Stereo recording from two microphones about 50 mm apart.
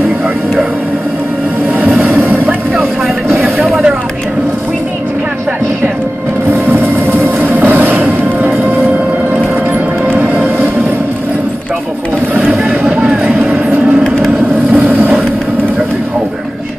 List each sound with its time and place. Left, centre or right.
2.8 s vehicle: right
6.7 s music: right
12.4 s vehicle: right
14.7 s vehicle: right